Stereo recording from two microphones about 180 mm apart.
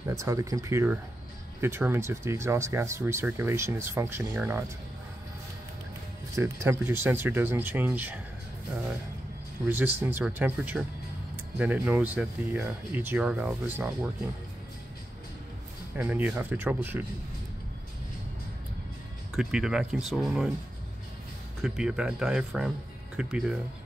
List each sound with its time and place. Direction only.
0.1 s speech: 15° right (ahead or behind)
6.3 s speech: 15° right (ahead or behind)
9.7 s speech: 10° right (ahead or behind)
16.0 s speech: 10° right (ahead or behind)
19.3 s speech: 5° right (ahead or behind)
21.5 s speech: centre (ahead or behind)